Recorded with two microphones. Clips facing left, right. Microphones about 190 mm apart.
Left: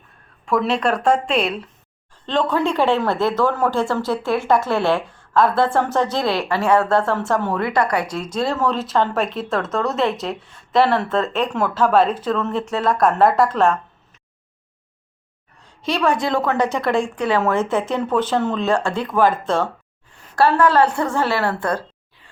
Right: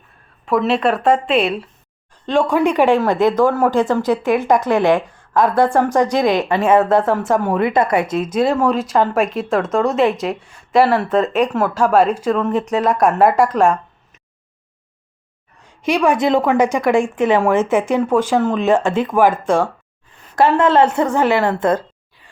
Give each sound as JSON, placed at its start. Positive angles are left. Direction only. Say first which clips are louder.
{"t": 0.4, "sound": "speech", "louder": "right 3 dB", "side_deg": -5}
{"t": 15.8, "sound": "a woman's voice", "louder": "right 4 dB", "side_deg": -15}